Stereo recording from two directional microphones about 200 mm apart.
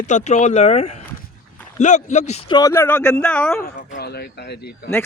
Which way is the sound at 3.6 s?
50° left (ahead or behind).